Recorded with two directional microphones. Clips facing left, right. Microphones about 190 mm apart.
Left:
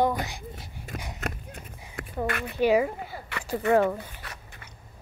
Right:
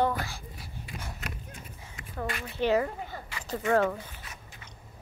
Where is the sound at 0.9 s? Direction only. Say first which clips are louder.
Left 6 dB; 45° left (ahead or behind).